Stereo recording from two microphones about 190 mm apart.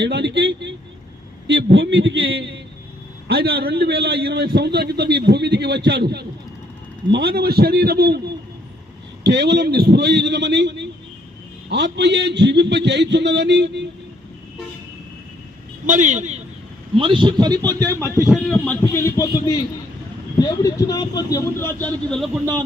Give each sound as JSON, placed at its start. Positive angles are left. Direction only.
{"t": 0.0, "sound": "a man's voice", "side_deg": -65}
{"t": 3.2, "sound": "a man's voice", "side_deg": -55}
{"t": 9.2, "sound": "a man's voice", "side_deg": -65}
{"t": 15.9, "sound": "speech", "side_deg": -40}
{"t": 17.0, "sound": "a man's voice", "side_deg": -25}
{"t": 18.3, "sound": "a man's voice", "side_deg": 0}
{"t": 18.7, "sound": "speech", "side_deg": 15}